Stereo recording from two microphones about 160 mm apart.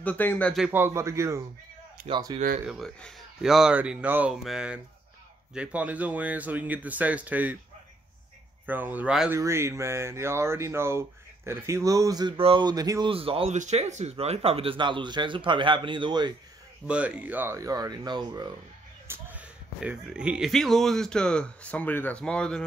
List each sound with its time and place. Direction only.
0.0 s speech: 10° left (ahead or behind)
0.7 s speech: 15° right (ahead or behind)
2.0 s speech: 30° right (ahead or behind)
2.6 s speech: 5° right (ahead or behind)
8.6 s speech: 10° right (ahead or behind)
9.3 s speech: 15° right (ahead or behind)
13.1 s speech: 35° right (ahead or behind)
16.8 s speech: 5° right (ahead or behind); by 18.5 s 25° right (ahead or behind)
19.0 s speech: 10° right (ahead or behind); by 22.6 s 5° left (ahead or behind)